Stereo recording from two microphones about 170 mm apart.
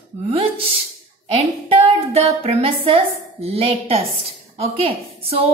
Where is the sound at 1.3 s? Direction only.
35° right (ahead or behind).